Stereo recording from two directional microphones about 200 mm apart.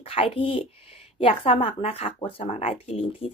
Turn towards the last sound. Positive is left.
turn(degrees=30)  # may be behind; listen again after turning